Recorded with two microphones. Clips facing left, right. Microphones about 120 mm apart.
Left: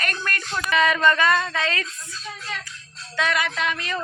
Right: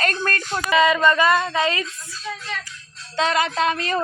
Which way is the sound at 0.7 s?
15° right (ahead or behind).